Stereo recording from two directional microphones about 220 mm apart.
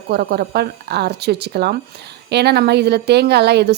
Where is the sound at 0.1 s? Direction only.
45° right (ahead or behind).